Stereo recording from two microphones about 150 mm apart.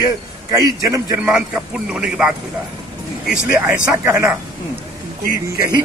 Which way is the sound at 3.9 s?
15° right (ahead or behind).